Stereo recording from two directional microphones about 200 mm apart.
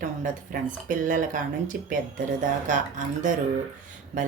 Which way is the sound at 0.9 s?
40° right (ahead or behind).